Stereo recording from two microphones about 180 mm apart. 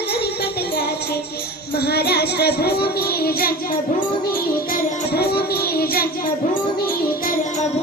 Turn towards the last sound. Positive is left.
turn(degrees=60)  # may be behind; listen again after turning